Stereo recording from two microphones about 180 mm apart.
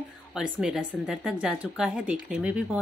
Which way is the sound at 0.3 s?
5° right (ahead or behind).